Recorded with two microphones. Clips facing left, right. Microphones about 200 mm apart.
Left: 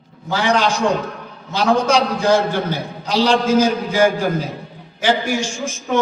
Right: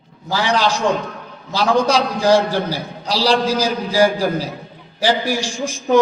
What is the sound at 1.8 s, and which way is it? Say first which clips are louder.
A man's voice: even; 35° right (ahead or behind).